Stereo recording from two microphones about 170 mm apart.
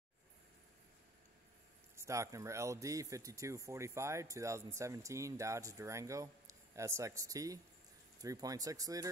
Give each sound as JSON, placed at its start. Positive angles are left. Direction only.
{"t": 2.0, "sound": "speech", "side_deg": -15}